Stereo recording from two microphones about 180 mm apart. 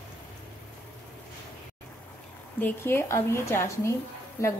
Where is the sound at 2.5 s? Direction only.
10° left (ahead or behind).